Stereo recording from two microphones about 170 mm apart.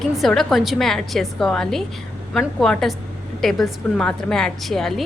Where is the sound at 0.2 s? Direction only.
Centre (ahead or behind).